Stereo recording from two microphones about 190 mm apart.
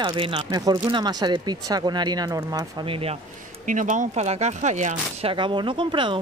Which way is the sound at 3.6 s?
45° right (ahead or behind).